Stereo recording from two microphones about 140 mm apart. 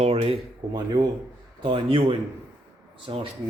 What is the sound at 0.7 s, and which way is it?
Speech, 30° right (ahead or behind).